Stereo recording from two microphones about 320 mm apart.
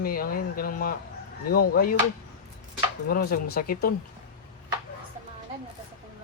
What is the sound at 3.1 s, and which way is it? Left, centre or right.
Speech, left.